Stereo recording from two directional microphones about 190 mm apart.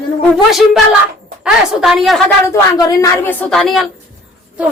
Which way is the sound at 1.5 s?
Centre (ahead or behind).